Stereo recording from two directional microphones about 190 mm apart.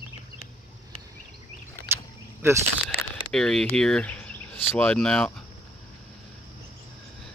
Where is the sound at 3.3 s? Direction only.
5° left (ahead or behind).